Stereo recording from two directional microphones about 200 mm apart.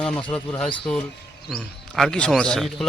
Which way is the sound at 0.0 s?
5° left (ahead or behind).